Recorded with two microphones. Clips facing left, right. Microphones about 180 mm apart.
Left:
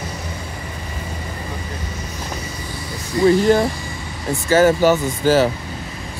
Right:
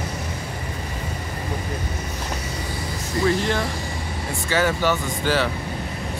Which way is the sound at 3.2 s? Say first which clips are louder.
Left 8 dB; 40° left (ahead or behind).